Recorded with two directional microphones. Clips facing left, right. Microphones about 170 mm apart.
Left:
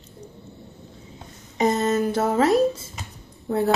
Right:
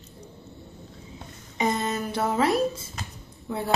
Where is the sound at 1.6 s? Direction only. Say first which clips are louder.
Left 6 dB; 40° left (ahead or behind).